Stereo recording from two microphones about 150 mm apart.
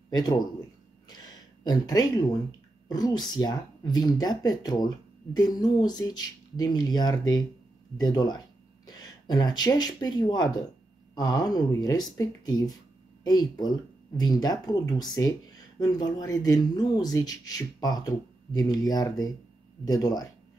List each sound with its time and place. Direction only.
0.1 s speech: 25° left (ahead or behind)
1.0 s a sound: 25° left (ahead or behind)
2.9 s speech: 25° left (ahead or behind)